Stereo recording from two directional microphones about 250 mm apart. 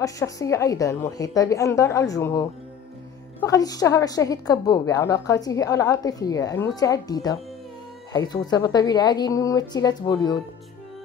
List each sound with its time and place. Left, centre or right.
0.0 s a woman's voice: centre